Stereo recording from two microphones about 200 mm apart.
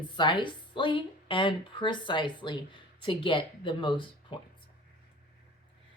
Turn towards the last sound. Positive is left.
turn(degrees=25)  # may be behind; listen again after turning